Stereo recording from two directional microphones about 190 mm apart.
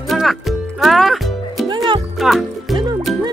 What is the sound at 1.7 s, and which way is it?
Music, 25° right (ahead or behind).